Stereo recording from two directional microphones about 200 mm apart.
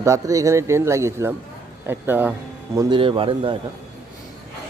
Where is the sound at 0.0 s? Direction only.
15° right (ahead or behind).